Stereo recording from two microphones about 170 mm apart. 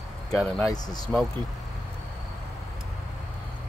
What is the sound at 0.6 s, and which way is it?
Speech, 25° left (ahead or behind).